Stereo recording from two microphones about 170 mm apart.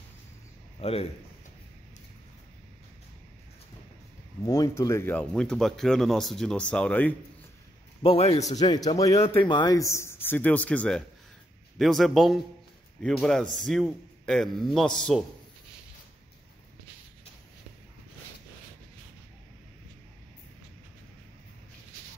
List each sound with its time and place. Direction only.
0.7 s a man's voice: 35° left (ahead or behind)
4.4 s speech: 20° left (ahead or behind)
8.0 s a man's voice: 35° left (ahead or behind)
8.5 s speech: 25° left (ahead or behind); by 15.2 s 5° left (ahead or behind)